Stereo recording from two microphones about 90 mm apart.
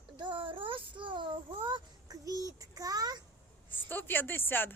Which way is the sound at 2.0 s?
40° right (ahead or behind).